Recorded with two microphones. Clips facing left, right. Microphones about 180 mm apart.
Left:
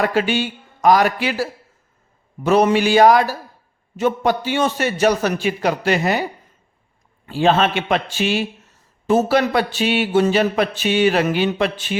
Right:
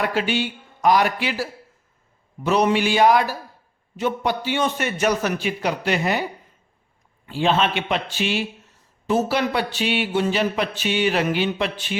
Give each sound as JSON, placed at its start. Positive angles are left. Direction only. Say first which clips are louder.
{"t": 0.1, "sound": "speech", "louder": "left 4 dB", "side_deg": 45}
{"t": 7.3, "sound": "speech", "louder": "left 4 dB", "side_deg": 40}